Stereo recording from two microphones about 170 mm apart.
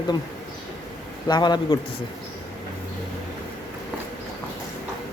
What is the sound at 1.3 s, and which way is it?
Speech, 25° left (ahead or behind).